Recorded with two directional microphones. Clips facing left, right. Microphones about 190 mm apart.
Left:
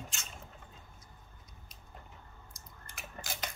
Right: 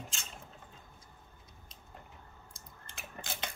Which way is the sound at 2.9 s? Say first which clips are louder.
Even; 25° right (ahead or behind).